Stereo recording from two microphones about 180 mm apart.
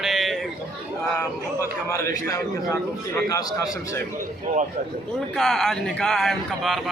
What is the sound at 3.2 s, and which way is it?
Speech, 20° left (ahead or behind).